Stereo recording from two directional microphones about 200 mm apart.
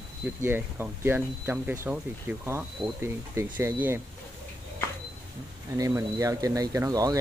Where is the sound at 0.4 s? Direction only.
10° right (ahead or behind).